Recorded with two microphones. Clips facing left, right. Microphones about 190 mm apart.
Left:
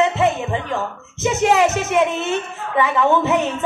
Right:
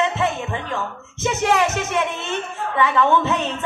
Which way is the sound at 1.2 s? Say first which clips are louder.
Left 3 dB; 15° left (ahead or behind).